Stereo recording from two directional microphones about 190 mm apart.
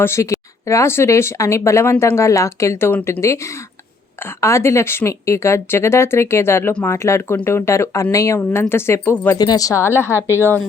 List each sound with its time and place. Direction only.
0.0 s a woman's voice: 15° left (ahead or behind)